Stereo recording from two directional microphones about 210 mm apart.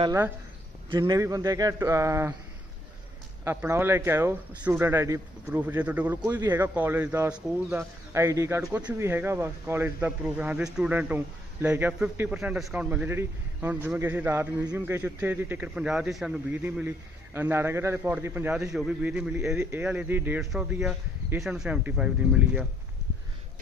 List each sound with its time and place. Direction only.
0.0 s speech: 15° right (ahead or behind)
3.4 s speech: 10° right (ahead or behind)